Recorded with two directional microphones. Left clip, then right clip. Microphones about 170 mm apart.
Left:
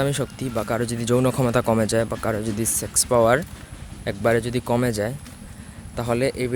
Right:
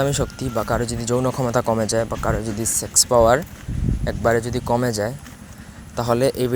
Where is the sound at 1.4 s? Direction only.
40° left (ahead or behind).